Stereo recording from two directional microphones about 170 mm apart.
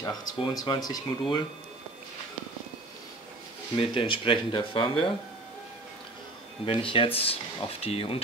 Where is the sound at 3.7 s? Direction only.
30° left (ahead or behind).